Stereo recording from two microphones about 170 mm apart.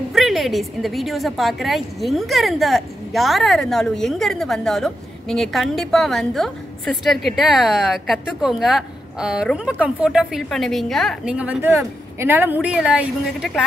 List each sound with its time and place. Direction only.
0.1 s a woman's voice: centre (ahead or behind)